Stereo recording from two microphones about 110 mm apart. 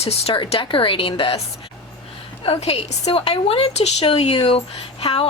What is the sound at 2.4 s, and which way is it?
A woman's voice, 65° left (ahead or behind).